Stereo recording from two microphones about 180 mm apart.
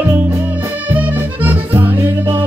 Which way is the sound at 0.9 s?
10° right (ahead or behind).